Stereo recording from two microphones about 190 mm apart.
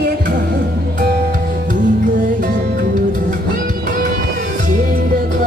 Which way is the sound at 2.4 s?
45° right (ahead or behind).